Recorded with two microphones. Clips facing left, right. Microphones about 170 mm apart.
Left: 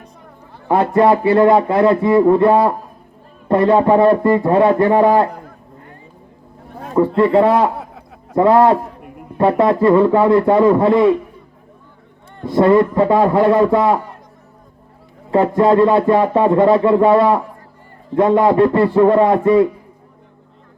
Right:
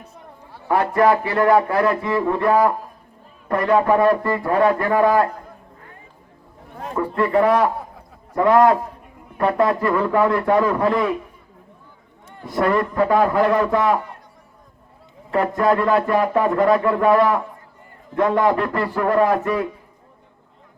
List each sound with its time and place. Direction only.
0.7 s a man's voice: 25° left (ahead or behind)
7.2 s a man's voice: 25° left (ahead or behind)
7.8 s a sound: 75° left (ahead or behind)
8.4 s a man's voice: 30° left (ahead or behind)
12.5 s a man's voice: 25° left (ahead or behind)
15.3 s a man's voice: 25° left (ahead or behind)